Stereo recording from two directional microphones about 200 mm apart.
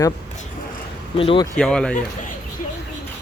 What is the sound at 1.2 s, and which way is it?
Speech, 25° left (ahead or behind).